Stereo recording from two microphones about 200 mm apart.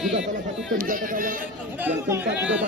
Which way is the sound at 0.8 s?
45° right (ahead or behind).